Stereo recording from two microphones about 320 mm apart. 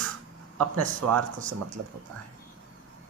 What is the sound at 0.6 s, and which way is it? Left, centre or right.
Speech, right.